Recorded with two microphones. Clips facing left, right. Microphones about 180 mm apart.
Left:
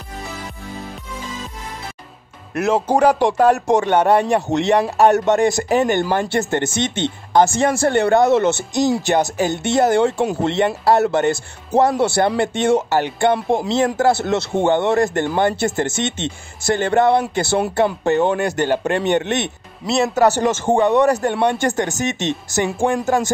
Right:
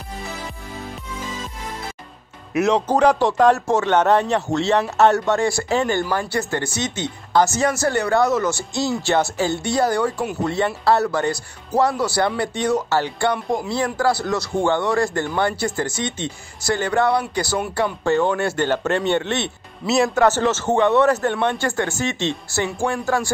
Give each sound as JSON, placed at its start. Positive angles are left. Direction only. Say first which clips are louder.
{"t": 2.5, "sound": "a man's voice", "louder": "left 1 dB", "side_deg": 5}
{"t": 19.9, "sound": "a man's voice", "louder": "left 1 dB", "side_deg": 0}
{"t": 20.2, "sound": "a man's voice", "louder": "left 2 dB", "side_deg": 15}